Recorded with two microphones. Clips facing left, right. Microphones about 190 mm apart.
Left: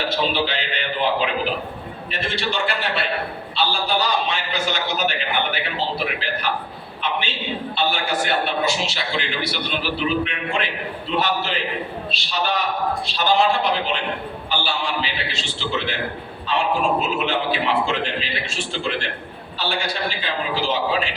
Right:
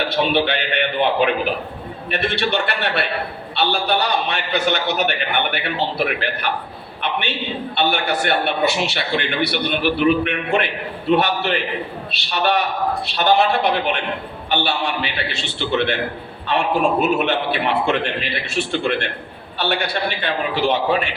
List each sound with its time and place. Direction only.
0.0 s a man's voice: 60° right (ahead or behind)